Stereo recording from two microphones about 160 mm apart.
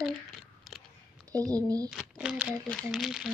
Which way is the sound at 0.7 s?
Centre (ahead or behind).